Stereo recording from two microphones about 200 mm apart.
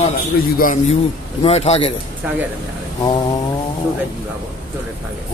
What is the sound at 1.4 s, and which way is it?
Speech, 30° left (ahead or behind).